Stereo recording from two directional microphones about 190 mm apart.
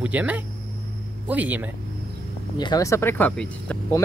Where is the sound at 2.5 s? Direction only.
20° left (ahead or behind).